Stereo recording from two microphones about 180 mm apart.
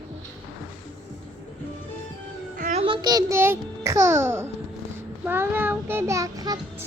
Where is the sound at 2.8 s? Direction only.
25° right (ahead or behind).